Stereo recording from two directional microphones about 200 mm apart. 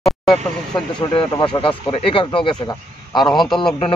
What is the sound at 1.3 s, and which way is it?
A man's voice, 20° left (ahead or behind).